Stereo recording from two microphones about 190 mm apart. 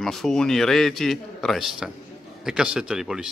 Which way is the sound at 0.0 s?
Centre (ahead or behind).